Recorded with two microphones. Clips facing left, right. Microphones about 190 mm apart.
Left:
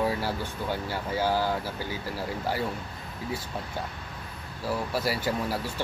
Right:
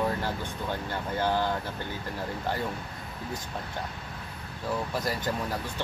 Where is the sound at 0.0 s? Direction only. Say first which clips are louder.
Left 1 dB; 10° left (ahead or behind).